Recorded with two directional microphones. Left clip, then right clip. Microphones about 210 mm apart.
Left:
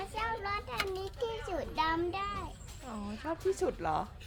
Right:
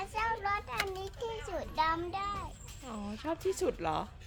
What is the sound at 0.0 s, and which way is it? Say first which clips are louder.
Child singing: right 2 dB; 5° right (ahead or behind).